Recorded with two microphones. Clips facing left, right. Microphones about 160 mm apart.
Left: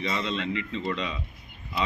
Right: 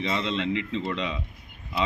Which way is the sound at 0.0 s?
20° right (ahead or behind).